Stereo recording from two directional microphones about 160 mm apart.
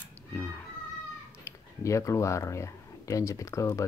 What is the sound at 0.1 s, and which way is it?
Cat, 15° left (ahead or behind).